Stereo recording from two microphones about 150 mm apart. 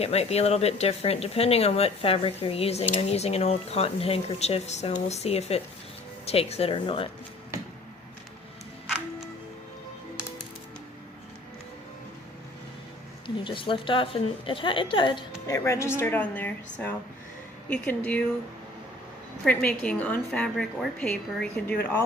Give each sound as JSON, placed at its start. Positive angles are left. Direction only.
{"t": 0.0, "sound": "a woman's voice", "side_deg": 45}
{"t": 13.2, "sound": "a woman's voice", "side_deg": 35}
{"t": 19.5, "sound": "a woman's voice", "side_deg": 10}